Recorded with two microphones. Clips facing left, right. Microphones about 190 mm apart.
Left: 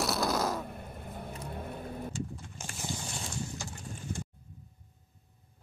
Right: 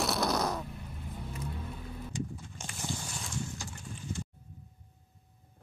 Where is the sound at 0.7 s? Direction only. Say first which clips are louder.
Left 2 dB; 55° left (ahead or behind).